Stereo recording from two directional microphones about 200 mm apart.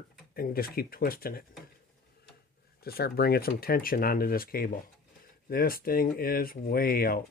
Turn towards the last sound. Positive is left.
turn(degrees=45)  # may be behind; listen again after turning